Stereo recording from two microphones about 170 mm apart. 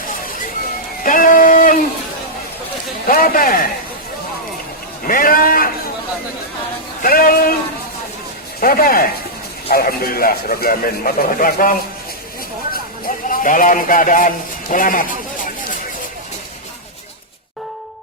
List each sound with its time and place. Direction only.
1.0 s a sound: 50° left (ahead or behind)
3.1 s a man's voice: 60° left (ahead or behind)
5.0 s a man's voice: 55° left (ahead or behind)
7.0 s a man's voice: 55° left (ahead or behind)
8.6 s a man's voice: 60° left (ahead or behind)